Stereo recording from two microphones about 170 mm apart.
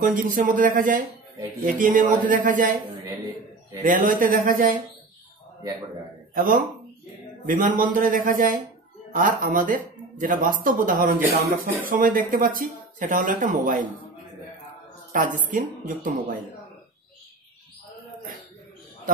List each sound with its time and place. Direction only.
0.0 s speech: 50° right (ahead or behind)
3.8 s speech: 50° right (ahead or behind)
6.3 s speech: 55° right (ahead or behind)
15.1 s speech: 50° right (ahead or behind)